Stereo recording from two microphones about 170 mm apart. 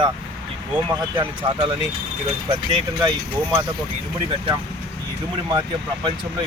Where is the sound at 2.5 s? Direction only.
30° right (ahead or behind).